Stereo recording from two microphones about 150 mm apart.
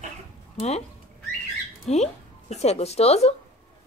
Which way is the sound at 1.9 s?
45° left (ahead or behind).